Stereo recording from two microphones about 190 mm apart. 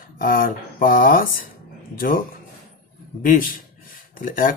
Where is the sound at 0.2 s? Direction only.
45° left (ahead or behind).